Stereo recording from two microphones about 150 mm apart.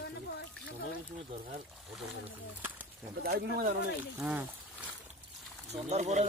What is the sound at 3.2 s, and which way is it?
Speech, 80° right.